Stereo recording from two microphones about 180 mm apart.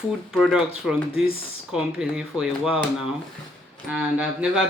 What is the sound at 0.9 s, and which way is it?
Speech, centre (ahead or behind).